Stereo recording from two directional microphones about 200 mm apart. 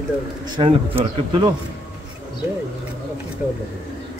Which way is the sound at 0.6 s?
25° right (ahead or behind).